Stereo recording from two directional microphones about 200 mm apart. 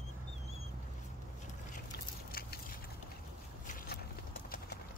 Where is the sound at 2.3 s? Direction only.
45° left (ahead or behind).